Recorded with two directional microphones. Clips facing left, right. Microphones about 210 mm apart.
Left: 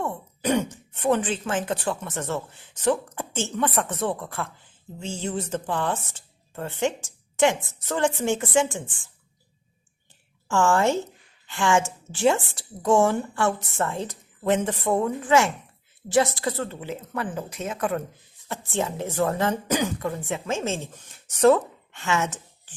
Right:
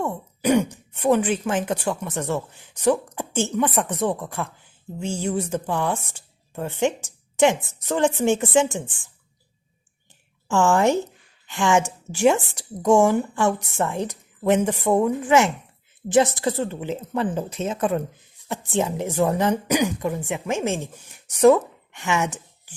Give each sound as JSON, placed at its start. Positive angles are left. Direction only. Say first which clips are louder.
{"t": 0.1, "sound": "speech", "louder": "right 4 dB", "side_deg": -10}
{"t": 10.5, "sound": "speech", "louder": "right 3 dB", "side_deg": -15}